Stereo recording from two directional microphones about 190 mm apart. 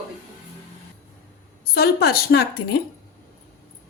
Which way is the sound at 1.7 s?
55° left (ahead or behind).